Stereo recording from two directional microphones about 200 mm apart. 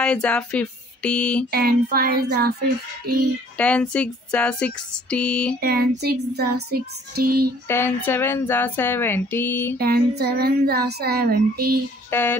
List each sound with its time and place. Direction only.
0.0 s speech: 5° left (ahead or behind)
1.5 s speech: 50° right (ahead or behind)
3.5 s music: 5° left (ahead or behind)
5.6 s speech: 50° right (ahead or behind)
7.6 s speech: 10° left (ahead or behind)
9.8 s speech: 50° right (ahead or behind)
12.1 s speech: 10° left (ahead or behind)